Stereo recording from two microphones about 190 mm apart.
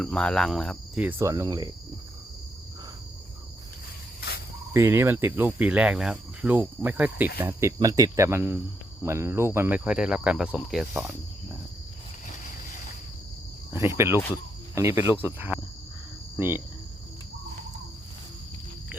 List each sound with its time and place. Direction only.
0.0 s cricket: 5° left (ahead or behind)
1.0 s speech: 15° right (ahead or behind)
4.7 s speech: 15° right (ahead or behind)
13.7 s speech: 15° right (ahead or behind)